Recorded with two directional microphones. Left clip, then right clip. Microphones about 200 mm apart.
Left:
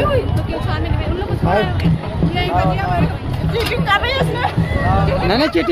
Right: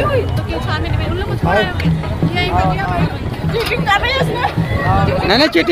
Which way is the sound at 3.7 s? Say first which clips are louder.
Right 2 dB; 20° right (ahead or behind).